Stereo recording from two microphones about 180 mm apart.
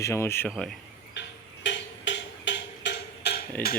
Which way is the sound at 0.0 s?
15° left (ahead or behind).